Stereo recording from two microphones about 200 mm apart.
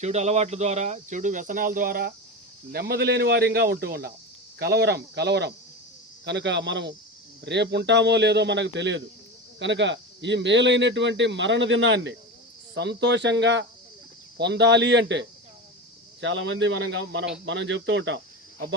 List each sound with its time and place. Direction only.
0.0 s speech: 35° right (ahead or behind); by 18.2 s 65° right (ahead or behind)